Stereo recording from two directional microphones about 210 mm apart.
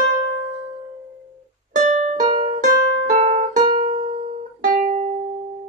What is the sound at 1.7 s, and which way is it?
Music, 35° right (ahead or behind).